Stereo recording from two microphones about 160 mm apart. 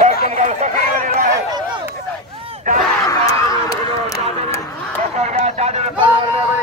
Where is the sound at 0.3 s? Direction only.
50° right (ahead or behind).